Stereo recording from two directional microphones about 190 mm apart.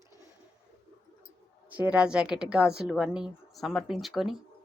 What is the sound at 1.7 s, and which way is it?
A woman's voice, 5° right (ahead or behind).